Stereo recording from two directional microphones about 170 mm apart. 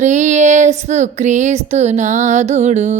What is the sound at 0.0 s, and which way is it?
Child singing, 45° right (ahead or behind).